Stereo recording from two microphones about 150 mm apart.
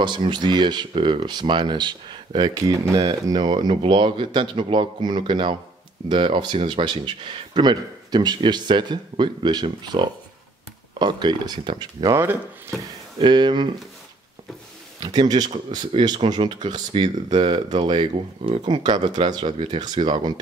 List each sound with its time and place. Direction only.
0.0 s speech: 30° right (ahead or behind)
12.1 s speech: 15° right (ahead or behind)
13.2 s speech: 30° right (ahead or behind)
15.0 s speech: 25° right (ahead or behind)